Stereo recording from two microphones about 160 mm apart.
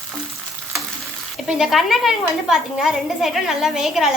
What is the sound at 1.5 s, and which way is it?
A woman's voice, centre (ahead or behind).